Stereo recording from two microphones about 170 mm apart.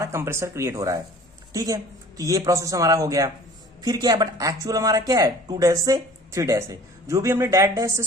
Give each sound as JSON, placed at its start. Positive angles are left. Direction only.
{"t": 0.0, "sound": "speech", "side_deg": -15}